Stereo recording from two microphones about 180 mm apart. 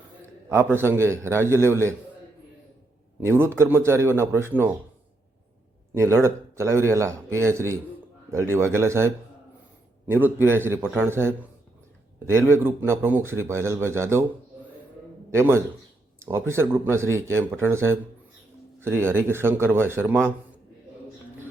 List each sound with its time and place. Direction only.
0.4 s speech: 15° right (ahead or behind)
3.2 s speech: 15° right (ahead or behind)
6.0 s speech: 15° right (ahead or behind)
15.3 s speech: 15° right (ahead or behind)